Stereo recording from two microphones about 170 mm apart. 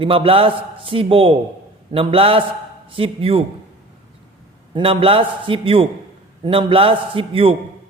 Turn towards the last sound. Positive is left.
turn(degrees=-30)  # may be behind; listen again after turning